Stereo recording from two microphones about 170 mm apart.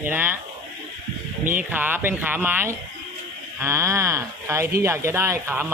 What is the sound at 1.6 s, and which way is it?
Speech, 10° right (ahead or behind).